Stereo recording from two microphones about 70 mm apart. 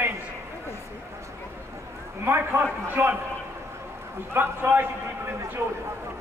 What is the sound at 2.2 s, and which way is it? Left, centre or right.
Speech, right.